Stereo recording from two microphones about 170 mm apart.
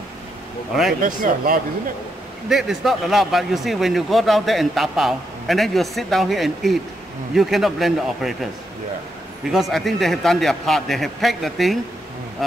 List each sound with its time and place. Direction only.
1.0 s speech: 55° right (ahead or behind)
2.5 s speech: centre (ahead or behind)
9.5 s speech: centre (ahead or behind)